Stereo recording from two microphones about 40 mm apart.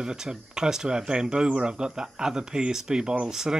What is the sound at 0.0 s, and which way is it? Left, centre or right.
Speech, centre.